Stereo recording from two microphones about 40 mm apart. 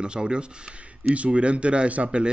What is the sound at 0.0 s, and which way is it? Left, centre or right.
Speech, right.